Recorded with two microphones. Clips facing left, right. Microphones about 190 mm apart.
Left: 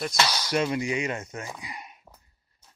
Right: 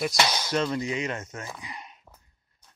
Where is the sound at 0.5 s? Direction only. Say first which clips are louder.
Left 2 dB; 10° left (ahead or behind).